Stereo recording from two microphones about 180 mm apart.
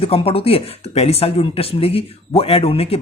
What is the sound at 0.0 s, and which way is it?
Speech, 30° left (ahead or behind).